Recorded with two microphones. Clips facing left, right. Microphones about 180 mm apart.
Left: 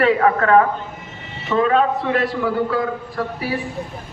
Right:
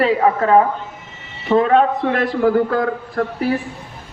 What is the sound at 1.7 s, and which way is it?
A man's voice, 55° right (ahead or behind).